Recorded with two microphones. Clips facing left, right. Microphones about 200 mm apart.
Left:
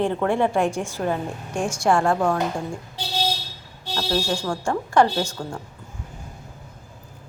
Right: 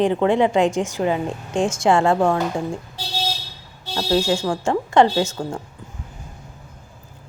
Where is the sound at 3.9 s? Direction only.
20° right (ahead or behind).